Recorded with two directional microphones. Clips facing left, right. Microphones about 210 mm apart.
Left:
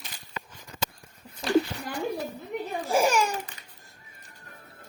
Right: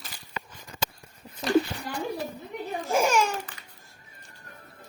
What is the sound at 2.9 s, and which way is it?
Speech, 35° left (ahead or behind).